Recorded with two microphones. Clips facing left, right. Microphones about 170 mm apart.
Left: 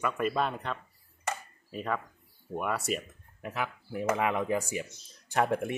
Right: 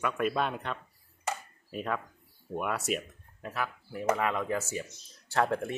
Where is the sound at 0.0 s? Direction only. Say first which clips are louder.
Even; centre (ahead or behind).